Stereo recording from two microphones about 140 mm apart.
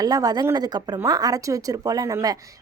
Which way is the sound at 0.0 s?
25° right (ahead or behind).